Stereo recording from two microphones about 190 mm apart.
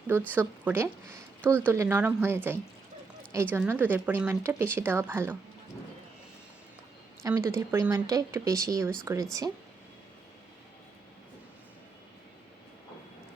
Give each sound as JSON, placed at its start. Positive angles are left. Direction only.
{"t": 0.1, "sound": "speech", "side_deg": -10}
{"t": 7.2, "sound": "speech", "side_deg": -15}